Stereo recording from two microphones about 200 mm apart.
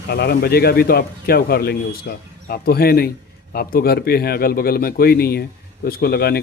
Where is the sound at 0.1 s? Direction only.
55° left (ahead or behind).